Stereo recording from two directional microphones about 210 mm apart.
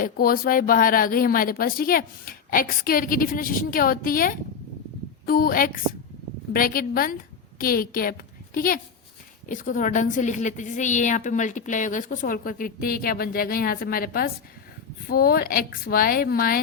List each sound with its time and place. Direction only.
0.0 s a woman's voice: 45° left (ahead or behind)